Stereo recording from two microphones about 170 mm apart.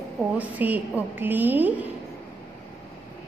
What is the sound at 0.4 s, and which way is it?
A woman's voice, 10° right (ahead or behind).